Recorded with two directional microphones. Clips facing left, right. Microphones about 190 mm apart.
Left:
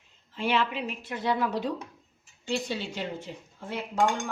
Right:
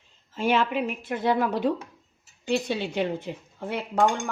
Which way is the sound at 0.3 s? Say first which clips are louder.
Right 4 dB; 45° right (ahead or behind).